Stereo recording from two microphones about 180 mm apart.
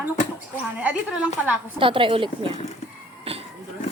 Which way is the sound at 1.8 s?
30° right (ahead or behind).